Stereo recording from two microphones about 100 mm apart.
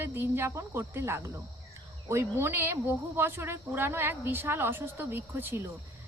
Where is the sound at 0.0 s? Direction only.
25° right (ahead or behind).